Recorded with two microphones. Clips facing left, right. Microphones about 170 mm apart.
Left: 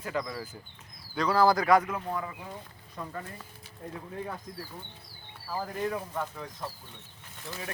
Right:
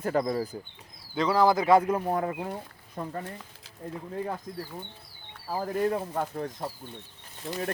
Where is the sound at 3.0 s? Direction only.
40° right (ahead or behind).